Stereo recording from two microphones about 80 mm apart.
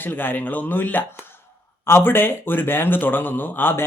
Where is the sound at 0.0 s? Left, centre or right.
Left.